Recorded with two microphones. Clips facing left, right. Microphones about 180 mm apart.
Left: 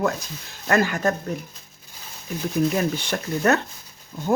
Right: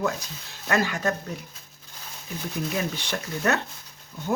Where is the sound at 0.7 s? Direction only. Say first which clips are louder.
Left 4 dB; 50° left (ahead or behind).